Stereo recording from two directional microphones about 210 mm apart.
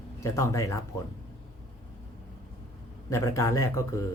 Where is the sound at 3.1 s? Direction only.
15° left (ahead or behind).